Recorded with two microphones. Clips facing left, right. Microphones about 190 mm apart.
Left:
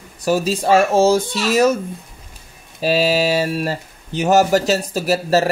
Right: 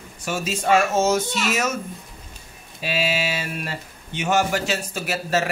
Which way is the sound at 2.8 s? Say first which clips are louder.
Left 8 dB; 40° left (ahead or behind).